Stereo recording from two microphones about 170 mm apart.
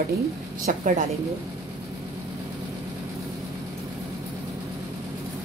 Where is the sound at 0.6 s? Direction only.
50° right (ahead or behind).